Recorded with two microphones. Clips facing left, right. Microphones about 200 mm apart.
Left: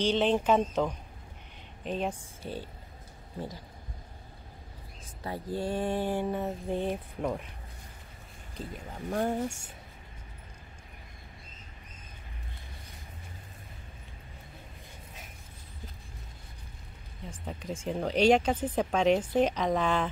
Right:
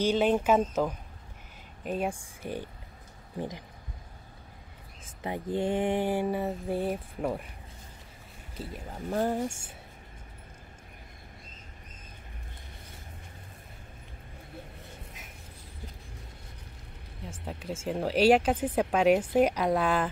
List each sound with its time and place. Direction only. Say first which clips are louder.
0.0 s speech: right 1 dB; 10° right (ahead or behind)
5.2 s speech: right 3 dB; 20° right (ahead or behind); by 7.4 s 5° right (ahead or behind)
8.5 s speech: right 1 dB; 5° right (ahead or behind)
17.2 s speech: right 1 dB; 5° right (ahead or behind)